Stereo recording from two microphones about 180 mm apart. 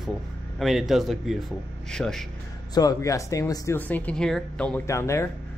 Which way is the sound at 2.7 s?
20° left (ahead or behind).